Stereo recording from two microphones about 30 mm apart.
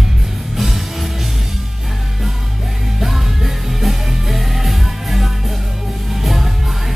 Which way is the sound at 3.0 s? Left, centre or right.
Centre.